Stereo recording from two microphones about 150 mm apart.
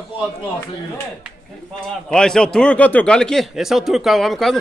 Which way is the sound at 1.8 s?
5° left (ahead or behind).